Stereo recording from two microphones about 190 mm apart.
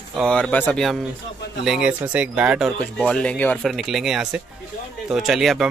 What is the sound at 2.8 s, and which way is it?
Speech, 5° left (ahead or behind).